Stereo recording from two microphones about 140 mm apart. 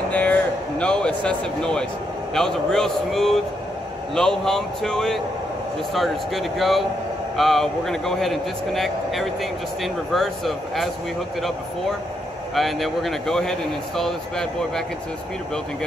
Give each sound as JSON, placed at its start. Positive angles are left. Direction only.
{"t": 0.1, "sound": "a sound", "side_deg": 10}
{"t": 2.3, "sound": "speech", "side_deg": 5}
{"t": 12.5, "sound": "speech", "side_deg": 0}